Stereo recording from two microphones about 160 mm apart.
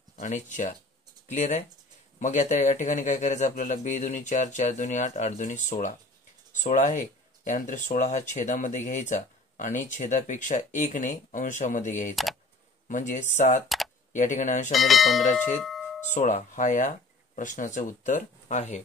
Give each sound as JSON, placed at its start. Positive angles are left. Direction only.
{"t": 0.1, "sound": "speech", "side_deg": 50}
{"t": 14.7, "sound": "speech", "side_deg": 0}
{"t": 16.1, "sound": "speech", "side_deg": 45}